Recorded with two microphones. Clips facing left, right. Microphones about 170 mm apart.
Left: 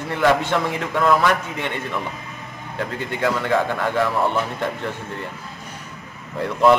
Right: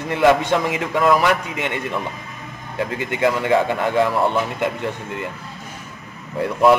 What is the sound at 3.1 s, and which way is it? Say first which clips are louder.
Speech: right 3 dB; 15° right (ahead or behind).